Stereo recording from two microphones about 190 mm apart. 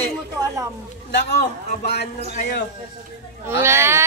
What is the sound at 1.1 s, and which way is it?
Speech, 60° left (ahead or behind).